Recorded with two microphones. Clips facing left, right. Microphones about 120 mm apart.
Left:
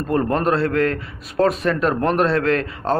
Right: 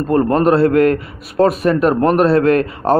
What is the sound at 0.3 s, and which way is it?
A man's voice, 5° right (ahead or behind).